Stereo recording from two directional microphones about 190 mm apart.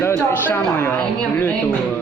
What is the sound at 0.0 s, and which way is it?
Speech, 10° left (ahead or behind).